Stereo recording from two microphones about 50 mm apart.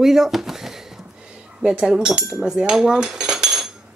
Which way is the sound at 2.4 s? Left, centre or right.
Centre.